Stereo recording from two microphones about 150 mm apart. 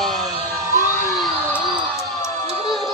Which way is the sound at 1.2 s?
Centre (ahead or behind).